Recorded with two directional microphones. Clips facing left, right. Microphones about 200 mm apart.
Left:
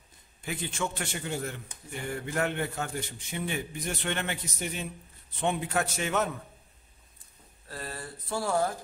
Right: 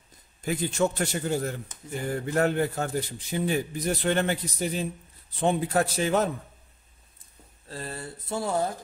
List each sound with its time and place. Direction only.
0.4 s a man's voice: 40° right (ahead or behind)
7.6 s speech: 25° right (ahead or behind)